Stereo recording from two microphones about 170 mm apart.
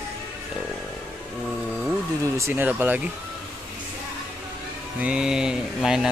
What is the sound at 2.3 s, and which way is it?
Speech, 15° right (ahead or behind).